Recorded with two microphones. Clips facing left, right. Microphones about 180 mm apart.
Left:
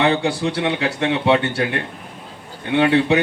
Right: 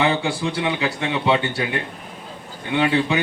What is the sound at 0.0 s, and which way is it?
Speech, 65° left (ahead or behind).